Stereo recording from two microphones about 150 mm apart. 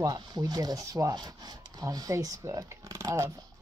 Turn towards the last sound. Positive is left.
turn(degrees=-20)  # may be behind; listen again after turning